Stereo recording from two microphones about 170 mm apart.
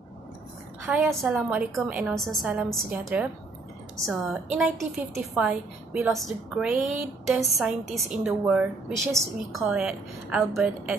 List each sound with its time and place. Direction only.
0.8 s a woman's voice: 10° right (ahead or behind)